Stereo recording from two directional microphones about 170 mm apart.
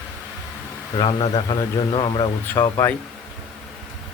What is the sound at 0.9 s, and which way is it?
Speech, 30° left (ahead or behind).